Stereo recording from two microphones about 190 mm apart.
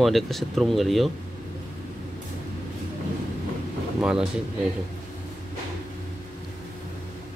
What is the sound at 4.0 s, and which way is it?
Speech, 5° right (ahead or behind).